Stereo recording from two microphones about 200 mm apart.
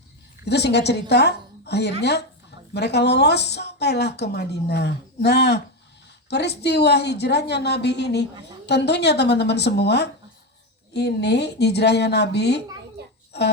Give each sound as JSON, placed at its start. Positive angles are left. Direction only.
{"t": 0.4, "sound": "a woman's voice", "side_deg": 55}
{"t": 13.0, "sound": "a sound", "side_deg": -55}
{"t": 13.3, "sound": "a woman's voice", "side_deg": 55}